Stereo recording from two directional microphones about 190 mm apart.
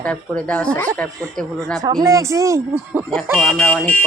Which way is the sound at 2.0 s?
15° right (ahead or behind).